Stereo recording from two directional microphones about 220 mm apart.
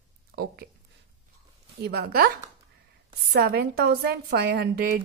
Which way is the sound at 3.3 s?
45° right (ahead or behind).